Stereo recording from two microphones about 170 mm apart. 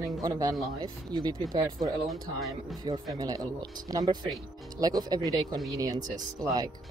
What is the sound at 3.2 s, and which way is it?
Speech, 20° right (ahead or behind).